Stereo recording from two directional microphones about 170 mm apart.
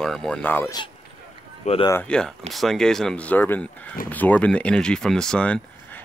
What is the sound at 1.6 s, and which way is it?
Speech, 40° left (ahead or behind).